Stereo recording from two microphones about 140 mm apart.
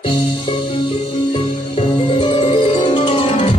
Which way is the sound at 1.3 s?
40° left (ahead or behind).